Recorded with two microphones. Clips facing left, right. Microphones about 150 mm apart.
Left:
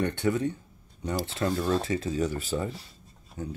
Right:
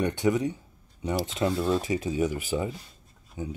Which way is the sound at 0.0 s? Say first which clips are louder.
Right 2 dB; 15° right (ahead or behind).